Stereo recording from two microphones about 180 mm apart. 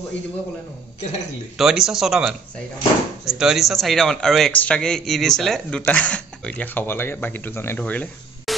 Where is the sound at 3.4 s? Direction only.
Centre (ahead or behind).